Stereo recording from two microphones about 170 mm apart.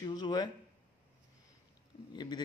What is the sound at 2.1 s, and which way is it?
Speech, 25° left (ahead or behind).